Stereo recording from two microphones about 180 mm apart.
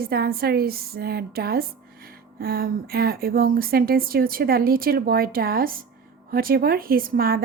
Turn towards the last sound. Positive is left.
turn(degrees=-55)  # may be behind; listen again after turning